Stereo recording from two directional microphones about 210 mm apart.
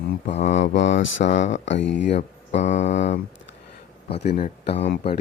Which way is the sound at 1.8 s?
60° left (ahead or behind).